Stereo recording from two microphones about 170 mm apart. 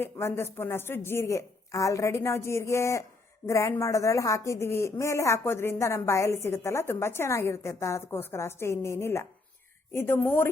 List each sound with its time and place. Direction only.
0.0 s a woman's voice: 15° left (ahead or behind)